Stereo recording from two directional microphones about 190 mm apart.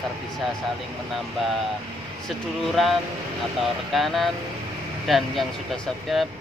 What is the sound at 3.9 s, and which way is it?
Speech, centre (ahead or behind).